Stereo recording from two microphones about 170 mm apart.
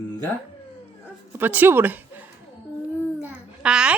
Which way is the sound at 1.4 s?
10° right (ahead or behind).